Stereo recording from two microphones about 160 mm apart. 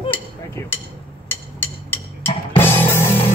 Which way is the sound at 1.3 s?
10° left (ahead or behind).